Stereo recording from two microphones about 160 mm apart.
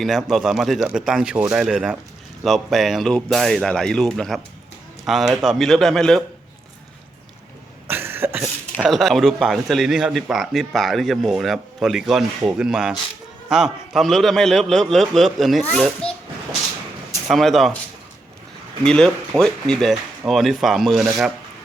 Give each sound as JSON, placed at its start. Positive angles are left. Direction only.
{"t": 0.0, "sound": "speech", "side_deg": 0}
{"t": 7.9, "sound": "cough", "side_deg": -15}
{"t": 8.8, "sound": "a child's voice", "side_deg": 0}
{"t": 17.2, "sound": "speech", "side_deg": 0}
{"t": 18.9, "sound": "speech", "side_deg": 5}